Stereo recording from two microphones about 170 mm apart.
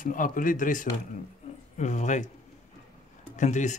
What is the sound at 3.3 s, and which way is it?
Speech, 45° left (ahead or behind).